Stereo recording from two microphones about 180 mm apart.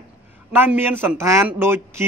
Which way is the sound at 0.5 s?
10° right (ahead or behind).